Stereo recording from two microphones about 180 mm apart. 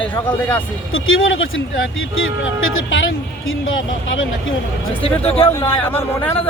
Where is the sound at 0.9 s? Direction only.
90° left.